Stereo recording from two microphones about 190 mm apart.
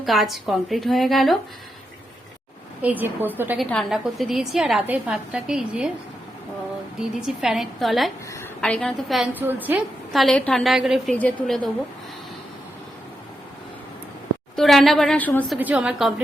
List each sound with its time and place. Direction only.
0.0 s a woman's voice: centre (ahead or behind)
2.8 s a woman's voice: 10° right (ahead or behind)
3.6 s a woman's voice: centre (ahead or behind)
7.2 s a woman's voice: centre (ahead or behind)
14.5 s a woman's voice: centre (ahead or behind)
15.5 s a woman's voice: 5° right (ahead or behind)